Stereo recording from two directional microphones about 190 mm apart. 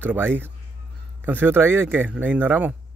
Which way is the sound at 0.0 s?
10° right (ahead or behind).